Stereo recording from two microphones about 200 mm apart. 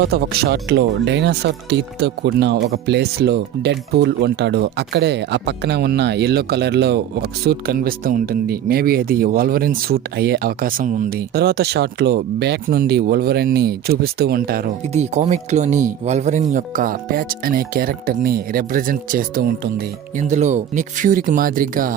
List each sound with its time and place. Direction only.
0.0 s speech: 55° right (ahead or behind)
14.9 s speech: 35° right (ahead or behind)
20.1 s speech: 35° right (ahead or behind)